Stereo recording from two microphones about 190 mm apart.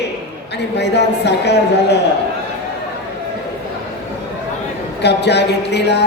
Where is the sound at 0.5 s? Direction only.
60° left (ahead or behind).